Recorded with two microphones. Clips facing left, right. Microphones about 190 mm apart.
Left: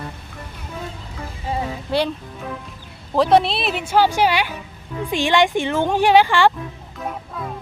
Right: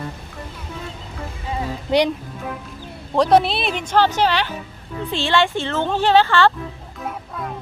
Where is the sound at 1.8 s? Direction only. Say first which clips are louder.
Right 4 dB; 15° right (ahead or behind).